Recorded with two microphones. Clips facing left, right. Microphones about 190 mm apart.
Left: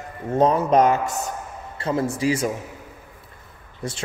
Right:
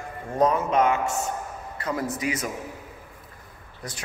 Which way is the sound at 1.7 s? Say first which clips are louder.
Left 5 dB; 30° left (ahead or behind).